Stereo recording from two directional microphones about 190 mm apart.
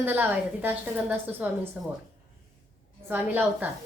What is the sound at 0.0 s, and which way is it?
A woman's voice, 10° right (ahead or behind).